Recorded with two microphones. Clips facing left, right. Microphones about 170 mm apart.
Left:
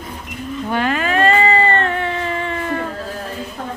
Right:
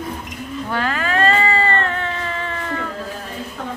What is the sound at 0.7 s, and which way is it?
Cat, 20° left (ahead or behind).